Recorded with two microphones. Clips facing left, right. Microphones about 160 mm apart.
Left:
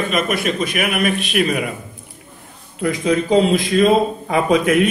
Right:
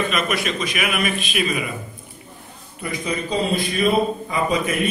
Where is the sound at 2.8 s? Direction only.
90° left.